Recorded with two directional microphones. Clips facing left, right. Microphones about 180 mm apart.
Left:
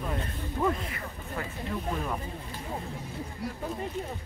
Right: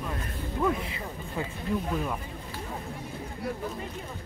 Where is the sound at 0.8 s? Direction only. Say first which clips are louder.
Right 1 dB; 20° right (ahead or behind).